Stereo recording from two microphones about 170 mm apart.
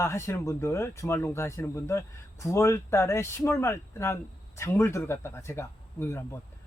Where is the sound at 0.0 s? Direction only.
15° left (ahead or behind).